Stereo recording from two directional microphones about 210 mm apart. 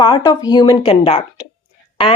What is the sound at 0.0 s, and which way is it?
Speech, 20° left (ahead or behind).